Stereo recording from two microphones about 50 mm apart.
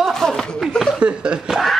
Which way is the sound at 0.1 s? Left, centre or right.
Centre.